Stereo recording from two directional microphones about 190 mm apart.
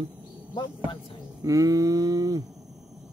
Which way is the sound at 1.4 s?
20° right (ahead or behind).